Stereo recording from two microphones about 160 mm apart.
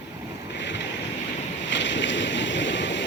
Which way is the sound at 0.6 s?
90° left.